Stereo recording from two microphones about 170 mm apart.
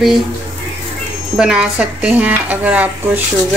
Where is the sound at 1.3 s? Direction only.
5° right (ahead or behind).